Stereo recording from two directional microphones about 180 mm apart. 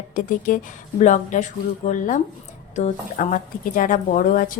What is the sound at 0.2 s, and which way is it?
Speech, 50° left (ahead or behind).